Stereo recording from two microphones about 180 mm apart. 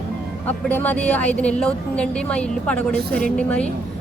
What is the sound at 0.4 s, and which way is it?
A woman's voice, 10° left (ahead or behind).